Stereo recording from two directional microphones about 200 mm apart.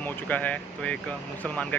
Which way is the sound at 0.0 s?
10° left (ahead or behind).